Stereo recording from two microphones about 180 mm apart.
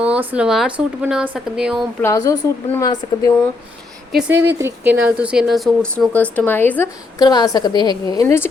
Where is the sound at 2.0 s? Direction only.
20° left (ahead or behind).